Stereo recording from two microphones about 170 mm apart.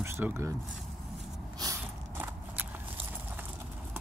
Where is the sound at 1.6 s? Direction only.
15° right (ahead or behind).